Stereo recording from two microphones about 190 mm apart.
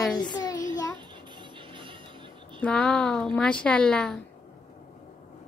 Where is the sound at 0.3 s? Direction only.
20° left (ahead or behind).